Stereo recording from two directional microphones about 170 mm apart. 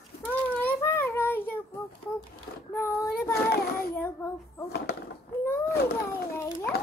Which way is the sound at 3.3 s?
65° left (ahead or behind).